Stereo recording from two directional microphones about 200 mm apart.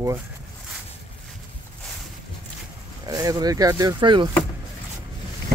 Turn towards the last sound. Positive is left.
turn(degrees=-25)  # may be behind; listen again after turning